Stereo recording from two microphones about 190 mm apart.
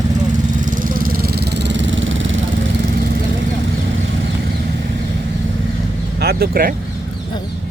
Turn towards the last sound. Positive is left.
turn(degrees=-50)  # may be behind; listen again after turning